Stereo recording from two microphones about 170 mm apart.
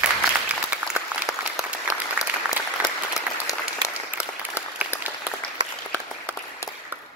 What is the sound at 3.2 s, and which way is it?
Applause, 20° left (ahead or behind).